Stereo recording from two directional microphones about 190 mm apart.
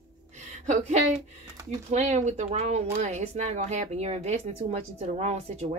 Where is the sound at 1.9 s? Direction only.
35° right (ahead or behind).